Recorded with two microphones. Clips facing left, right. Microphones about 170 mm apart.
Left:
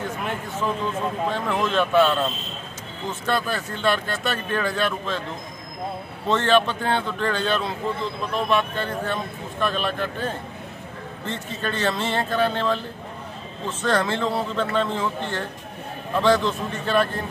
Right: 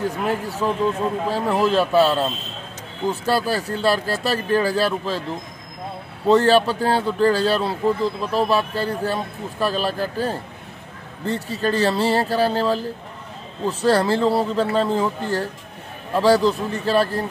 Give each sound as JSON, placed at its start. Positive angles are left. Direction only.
{"t": 0.0, "sound": "a man's voice", "side_deg": -35}
{"t": 6.2, "sound": "a man's voice", "side_deg": -35}